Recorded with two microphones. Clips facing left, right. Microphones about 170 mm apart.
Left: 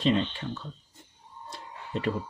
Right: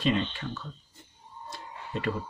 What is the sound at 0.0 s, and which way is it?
Speech, 25° left (ahead or behind).